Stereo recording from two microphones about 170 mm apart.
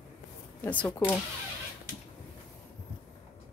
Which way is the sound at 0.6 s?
10° left (ahead or behind).